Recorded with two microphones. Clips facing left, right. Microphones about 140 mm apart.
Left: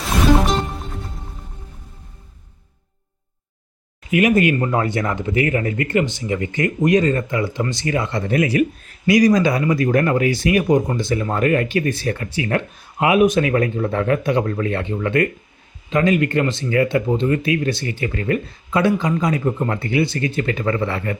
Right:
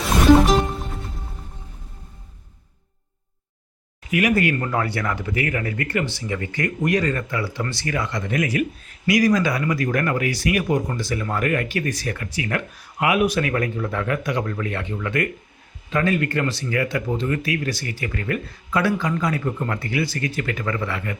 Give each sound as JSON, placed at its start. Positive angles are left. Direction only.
{"t": 0.4, "sound": "music", "side_deg": 0}
{"t": 4.1, "sound": "speech", "side_deg": 25}
{"t": 15.9, "sound": "speech", "side_deg": 20}